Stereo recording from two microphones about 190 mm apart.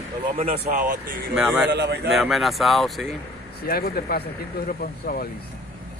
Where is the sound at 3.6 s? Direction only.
55° left (ahead or behind).